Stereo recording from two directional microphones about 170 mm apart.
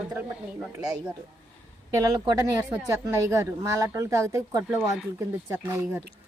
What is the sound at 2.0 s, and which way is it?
A woman's voice, 20° right (ahead or behind).